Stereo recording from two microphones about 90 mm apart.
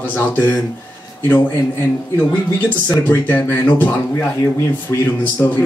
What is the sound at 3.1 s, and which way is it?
Speech, 25° left (ahead or behind).